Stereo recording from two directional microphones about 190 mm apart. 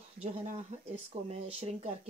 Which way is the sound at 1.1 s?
35° right (ahead or behind).